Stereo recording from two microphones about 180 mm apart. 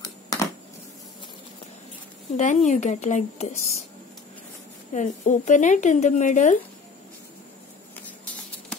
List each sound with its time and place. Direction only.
0.0 s a sound: 20° left (ahead or behind)
2.3 s speech: 40° left (ahead or behind)
4.9 s speech: 45° left (ahead or behind)